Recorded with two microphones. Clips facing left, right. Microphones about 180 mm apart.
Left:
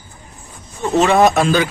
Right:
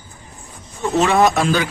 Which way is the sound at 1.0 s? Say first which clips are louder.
Left 2 dB; 25° left (ahead or behind).